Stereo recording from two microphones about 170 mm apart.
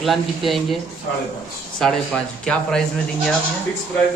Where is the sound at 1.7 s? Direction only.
5° left (ahead or behind).